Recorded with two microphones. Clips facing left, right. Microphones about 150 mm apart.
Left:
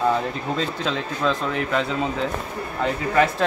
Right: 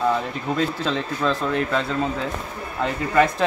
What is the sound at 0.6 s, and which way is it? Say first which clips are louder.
Speech: right 5 dB; centre (ahead or behind).